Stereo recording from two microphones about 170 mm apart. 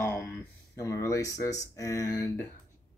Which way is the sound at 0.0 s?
15° left (ahead or behind).